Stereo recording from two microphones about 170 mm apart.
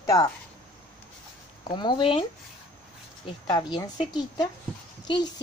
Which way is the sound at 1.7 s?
30° left (ahead or behind).